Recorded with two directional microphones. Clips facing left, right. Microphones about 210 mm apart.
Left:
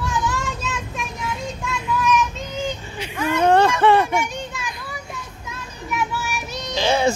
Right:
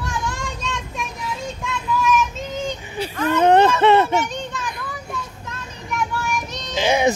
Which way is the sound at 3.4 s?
20° right (ahead or behind).